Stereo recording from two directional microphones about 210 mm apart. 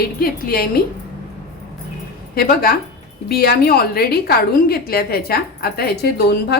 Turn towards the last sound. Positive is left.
turn(degrees=50)  # may be behind; listen again after turning